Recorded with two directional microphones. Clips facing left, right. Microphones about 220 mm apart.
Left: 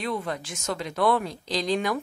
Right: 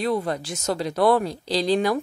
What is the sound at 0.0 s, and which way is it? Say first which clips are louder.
Speech: right 6 dB; 40° right (ahead or behind).